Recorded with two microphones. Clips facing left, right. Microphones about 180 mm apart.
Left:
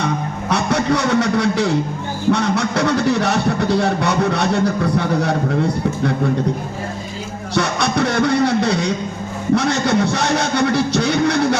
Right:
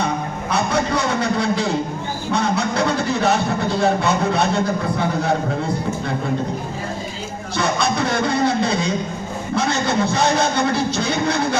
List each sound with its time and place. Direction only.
0.5 s a man's voice: 65° left (ahead or behind)
2.3 s music: 65° left (ahead or behind)
7.5 s music: 65° left (ahead or behind)
9.6 s speech: 65° left (ahead or behind)